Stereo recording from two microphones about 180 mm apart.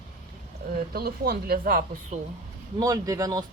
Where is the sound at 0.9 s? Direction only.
60° right (ahead or behind).